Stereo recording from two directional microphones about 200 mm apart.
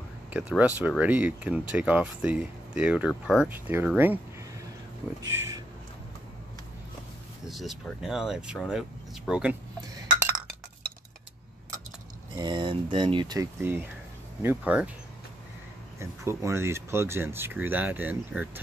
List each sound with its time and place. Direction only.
0.3 s speech: 5° right (ahead or behind)
7.4 s speech: centre (ahead or behind)
12.4 s speech: 20° right (ahead or behind); by 14.9 s 5° right (ahead or behind)
16.0 s speech: 15° right (ahead or behind)